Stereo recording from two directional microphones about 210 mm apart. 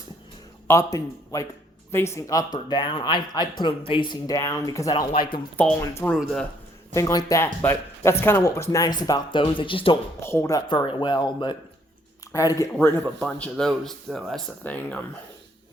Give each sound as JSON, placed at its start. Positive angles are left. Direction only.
{"t": 0.7, "sound": "speech", "side_deg": 15}
{"t": 5.5, "sound": "speech", "side_deg": 10}
{"t": 10.2, "sound": "speech", "side_deg": 10}